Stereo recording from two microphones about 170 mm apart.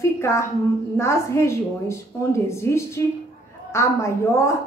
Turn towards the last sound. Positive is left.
turn(degrees=15)  # may be behind; listen again after turning